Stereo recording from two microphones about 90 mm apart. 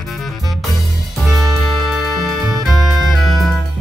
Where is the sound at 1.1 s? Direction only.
Centre (ahead or behind).